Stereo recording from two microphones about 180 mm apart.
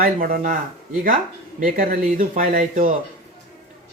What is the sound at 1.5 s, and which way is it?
Speech, 50° right (ahead or behind).